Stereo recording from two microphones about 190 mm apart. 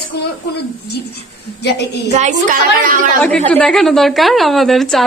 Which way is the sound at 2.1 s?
40° right (ahead or behind).